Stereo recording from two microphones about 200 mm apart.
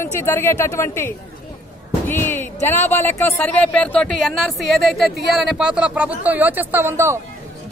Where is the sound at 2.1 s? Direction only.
10° left (ahead or behind).